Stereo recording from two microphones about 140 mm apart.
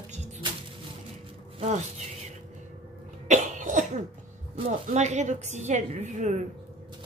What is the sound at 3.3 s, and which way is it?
Cough, 65° right (ahead or behind).